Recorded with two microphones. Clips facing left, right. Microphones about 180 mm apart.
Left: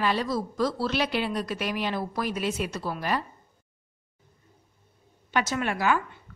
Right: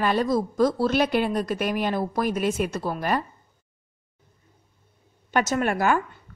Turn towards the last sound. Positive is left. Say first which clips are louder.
# right 3 dB
turn(degrees=-45)  # may be behind; listen again after turning